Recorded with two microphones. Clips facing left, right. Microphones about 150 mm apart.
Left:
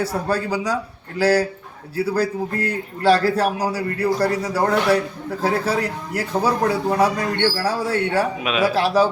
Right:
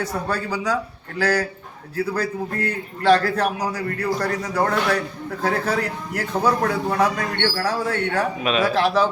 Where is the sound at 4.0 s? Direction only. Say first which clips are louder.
Left 5 dB; 30° left (ahead or behind).